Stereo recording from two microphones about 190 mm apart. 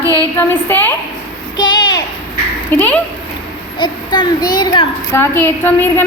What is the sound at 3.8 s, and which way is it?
Speech, 25° left (ahead or behind).